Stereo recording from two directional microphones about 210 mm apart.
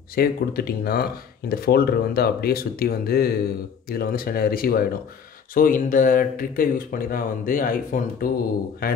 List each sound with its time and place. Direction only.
0.1 s speech: 45° left (ahead or behind)